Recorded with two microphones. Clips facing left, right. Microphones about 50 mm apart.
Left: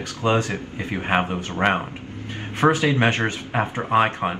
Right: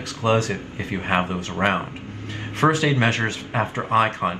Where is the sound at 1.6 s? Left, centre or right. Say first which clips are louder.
Left 1 dB; centre.